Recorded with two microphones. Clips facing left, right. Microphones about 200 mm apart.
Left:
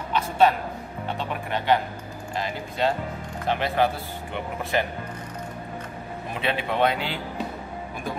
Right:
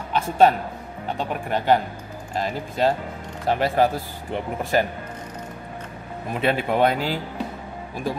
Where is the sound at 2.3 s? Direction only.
40° right (ahead or behind).